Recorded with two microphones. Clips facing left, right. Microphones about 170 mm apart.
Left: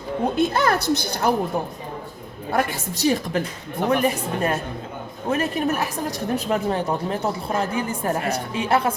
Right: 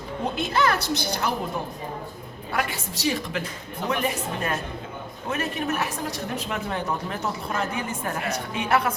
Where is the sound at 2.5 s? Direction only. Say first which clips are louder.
Left 5 dB; 45° left (ahead or behind).